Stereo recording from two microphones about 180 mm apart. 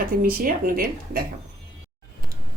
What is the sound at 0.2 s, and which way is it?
Speech, 50° right (ahead or behind).